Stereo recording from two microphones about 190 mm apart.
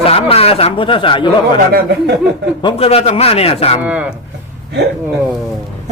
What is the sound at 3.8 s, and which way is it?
Speech, 5° right (ahead or behind).